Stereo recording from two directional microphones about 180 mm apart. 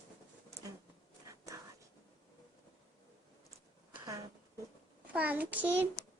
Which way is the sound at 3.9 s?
20° right (ahead or behind).